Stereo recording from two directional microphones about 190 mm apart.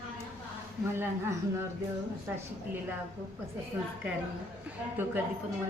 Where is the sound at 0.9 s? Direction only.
15° right (ahead or behind).